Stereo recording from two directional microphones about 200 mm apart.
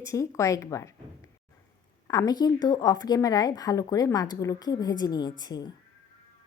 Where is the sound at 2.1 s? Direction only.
20° left (ahead or behind).